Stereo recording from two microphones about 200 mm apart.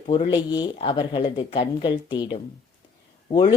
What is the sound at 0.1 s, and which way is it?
Speech, 25° left (ahead or behind).